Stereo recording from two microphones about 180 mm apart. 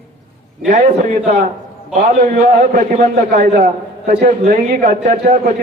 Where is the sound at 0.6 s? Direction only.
40° right (ahead or behind).